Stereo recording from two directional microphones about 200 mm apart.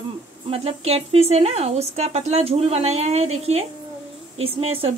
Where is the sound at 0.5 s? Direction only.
30° right (ahead or behind).